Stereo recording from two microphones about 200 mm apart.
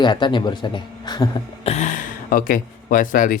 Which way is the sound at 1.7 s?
35° left (ahead or behind).